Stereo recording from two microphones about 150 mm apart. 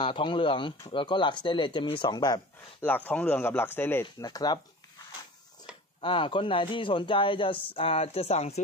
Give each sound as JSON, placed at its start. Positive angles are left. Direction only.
{"t": 0.0, "sound": "a man's voice", "side_deg": 35}
{"t": 2.8, "sound": "speech", "side_deg": 10}
{"t": 5.9, "sound": "a man's voice", "side_deg": 35}